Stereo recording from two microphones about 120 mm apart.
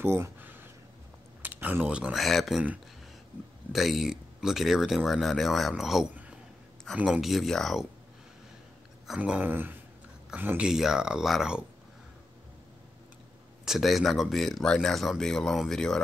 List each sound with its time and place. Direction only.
0.0 s a sound: 20° right (ahead or behind)
1.6 s speech: 15° right (ahead or behind)
3.7 s speech: centre (ahead or behind)
9.0 s speech: 5° right (ahead or behind)
10.7 s speech: 5° right (ahead or behind)
13.7 s speech: centre (ahead or behind)